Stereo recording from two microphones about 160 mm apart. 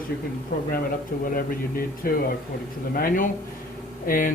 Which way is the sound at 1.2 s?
65° left (ahead or behind).